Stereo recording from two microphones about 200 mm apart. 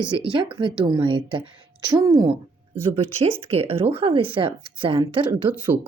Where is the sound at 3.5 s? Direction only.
30° right (ahead or behind).